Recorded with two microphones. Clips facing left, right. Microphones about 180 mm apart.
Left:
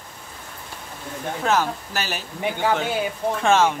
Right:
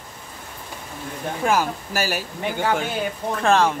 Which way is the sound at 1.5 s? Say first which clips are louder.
Even; 10° right (ahead or behind).